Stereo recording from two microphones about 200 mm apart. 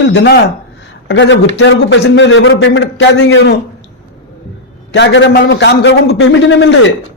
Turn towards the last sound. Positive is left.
turn(degrees=65)  # may be behind; listen again after turning